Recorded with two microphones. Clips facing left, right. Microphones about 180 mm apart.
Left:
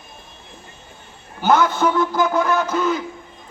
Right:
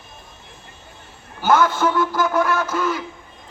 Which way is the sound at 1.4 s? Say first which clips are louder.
Left 1 dB; 20° left (ahead or behind).